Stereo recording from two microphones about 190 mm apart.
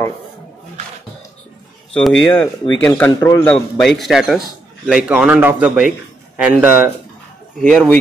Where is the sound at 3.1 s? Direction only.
20° left (ahead or behind).